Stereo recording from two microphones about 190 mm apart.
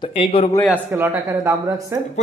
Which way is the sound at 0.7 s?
10° right (ahead or behind).